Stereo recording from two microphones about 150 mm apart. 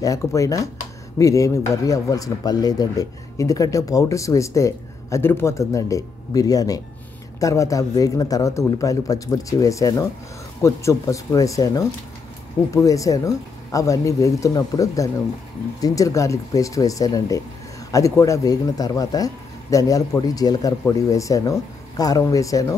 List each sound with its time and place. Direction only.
0.0 s speech: 20° left (ahead or behind)